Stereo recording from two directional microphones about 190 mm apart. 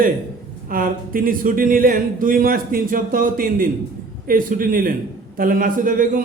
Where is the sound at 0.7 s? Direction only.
50° right (ahead or behind).